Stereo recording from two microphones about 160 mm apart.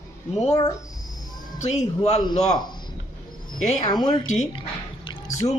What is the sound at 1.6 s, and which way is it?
Speech, 45° left (ahead or behind).